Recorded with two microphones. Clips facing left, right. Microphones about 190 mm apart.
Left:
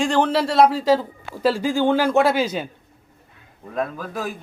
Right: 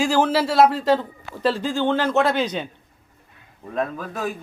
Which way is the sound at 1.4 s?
10° left (ahead or behind).